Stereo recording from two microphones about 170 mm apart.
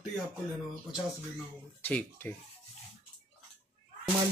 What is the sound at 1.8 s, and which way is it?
Speech, 10° left (ahead or behind).